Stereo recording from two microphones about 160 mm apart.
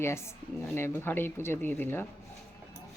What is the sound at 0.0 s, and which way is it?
Speech, 15° left (ahead or behind).